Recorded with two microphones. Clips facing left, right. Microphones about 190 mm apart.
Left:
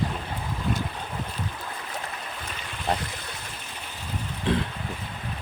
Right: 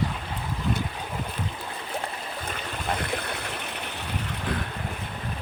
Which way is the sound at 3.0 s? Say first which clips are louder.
Right 7 dB; 60° right (ahead or behind).